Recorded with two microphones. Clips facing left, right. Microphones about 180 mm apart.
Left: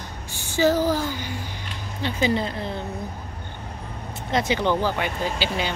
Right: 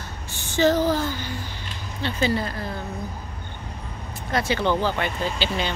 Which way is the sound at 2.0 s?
15° left (ahead or behind).